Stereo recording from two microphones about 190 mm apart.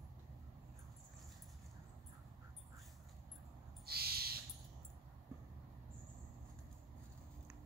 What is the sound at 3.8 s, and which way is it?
Owl, 55° right (ahead or behind).